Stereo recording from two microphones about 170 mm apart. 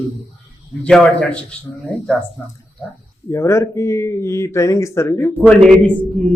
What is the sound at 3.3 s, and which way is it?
Speech, 15° left (ahead or behind).